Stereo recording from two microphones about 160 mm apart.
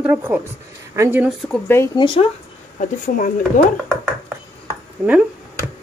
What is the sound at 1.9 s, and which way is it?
Speech, 30° left (ahead or behind).